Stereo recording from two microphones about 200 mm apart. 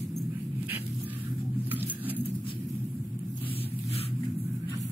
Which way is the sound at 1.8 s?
10° right (ahead or behind).